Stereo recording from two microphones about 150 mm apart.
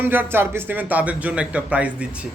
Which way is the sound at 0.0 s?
15° right (ahead or behind).